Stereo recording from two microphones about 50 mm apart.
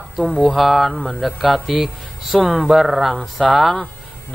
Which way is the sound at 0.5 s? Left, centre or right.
Centre.